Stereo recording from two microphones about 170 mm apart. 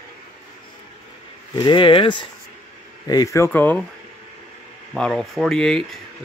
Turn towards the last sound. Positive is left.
turn(degrees=5)  # may be behind; listen again after turning